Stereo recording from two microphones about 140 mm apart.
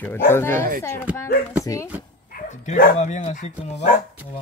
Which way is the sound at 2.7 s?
60° left (ahead or behind).